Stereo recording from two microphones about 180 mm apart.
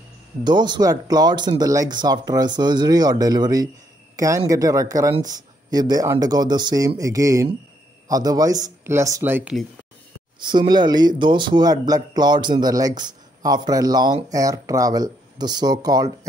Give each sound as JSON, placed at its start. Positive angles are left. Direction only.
{"t": 0.4, "sound": "speech", "side_deg": -25}
{"t": 10.4, "sound": "speech", "side_deg": -25}